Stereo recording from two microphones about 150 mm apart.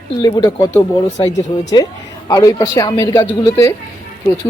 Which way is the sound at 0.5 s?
25° left (ahead or behind).